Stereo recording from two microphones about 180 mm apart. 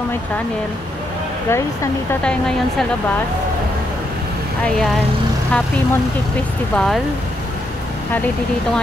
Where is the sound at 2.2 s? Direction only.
5° left (ahead or behind).